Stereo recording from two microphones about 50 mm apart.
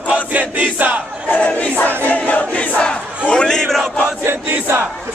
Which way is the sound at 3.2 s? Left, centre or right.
Centre.